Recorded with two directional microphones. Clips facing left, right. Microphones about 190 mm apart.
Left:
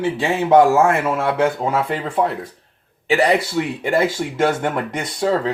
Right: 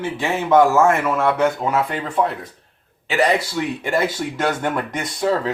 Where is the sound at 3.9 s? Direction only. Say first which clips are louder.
Left 4 dB; 30° left (ahead or behind).